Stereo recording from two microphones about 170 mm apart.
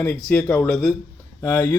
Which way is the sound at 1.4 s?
15° left (ahead or behind).